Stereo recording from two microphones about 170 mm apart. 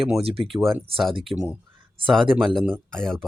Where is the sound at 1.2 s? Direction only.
35° right (ahead or behind).